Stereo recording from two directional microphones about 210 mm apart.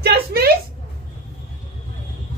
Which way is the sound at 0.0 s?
50° right (ahead or behind).